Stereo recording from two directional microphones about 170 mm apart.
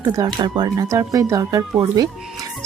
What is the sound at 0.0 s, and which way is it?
Speech, 20° right (ahead or behind).